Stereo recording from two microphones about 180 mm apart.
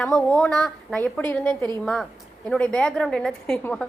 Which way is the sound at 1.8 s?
Centre (ahead or behind).